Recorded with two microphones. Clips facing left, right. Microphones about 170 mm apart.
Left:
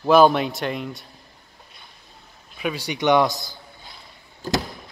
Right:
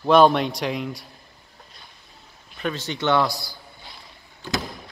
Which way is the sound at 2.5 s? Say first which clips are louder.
Left 1 dB; 10° left (ahead or behind).